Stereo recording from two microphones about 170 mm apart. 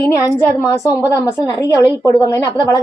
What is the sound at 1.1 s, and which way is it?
A woman's voice, 20° left (ahead or behind).